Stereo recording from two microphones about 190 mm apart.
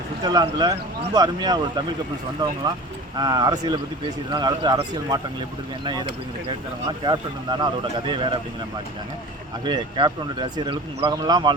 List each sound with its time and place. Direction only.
0.2 s speech: 20° right (ahead or behind)
3.2 s speech: 20° right (ahead or behind)
9.6 s speech: 25° right (ahead or behind)